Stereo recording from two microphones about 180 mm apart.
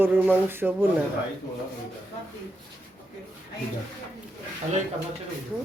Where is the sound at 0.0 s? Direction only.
10° right (ahead or behind).